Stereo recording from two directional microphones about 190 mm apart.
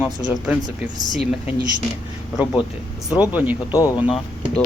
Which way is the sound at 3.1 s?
10° right (ahead or behind).